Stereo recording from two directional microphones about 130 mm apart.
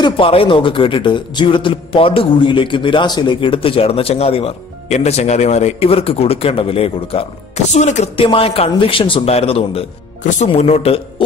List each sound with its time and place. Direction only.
0.0 s speech: 45° left (ahead or behind)
7.7 s a man's voice: 65° left (ahead or behind)
8.2 s speech: 45° left (ahead or behind)
10.2 s a man's voice: 65° left (ahead or behind)